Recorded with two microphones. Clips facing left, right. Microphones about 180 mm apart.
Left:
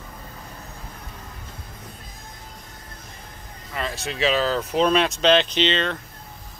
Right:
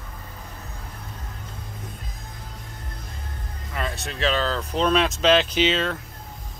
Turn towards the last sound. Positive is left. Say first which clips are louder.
# even
turn(degrees=-5)  # may be behind; listen again after turning